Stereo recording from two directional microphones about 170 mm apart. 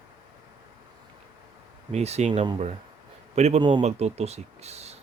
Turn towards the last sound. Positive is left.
turn(degrees=-40)  # may be behind; listen again after turning